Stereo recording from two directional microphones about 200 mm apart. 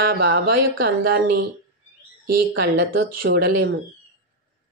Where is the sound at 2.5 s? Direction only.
55° right (ahead or behind).